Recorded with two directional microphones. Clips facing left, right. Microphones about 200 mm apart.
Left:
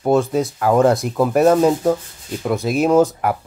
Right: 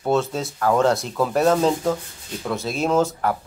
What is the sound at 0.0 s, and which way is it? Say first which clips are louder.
Speech: left 5 dB; 15° left (ahead or behind).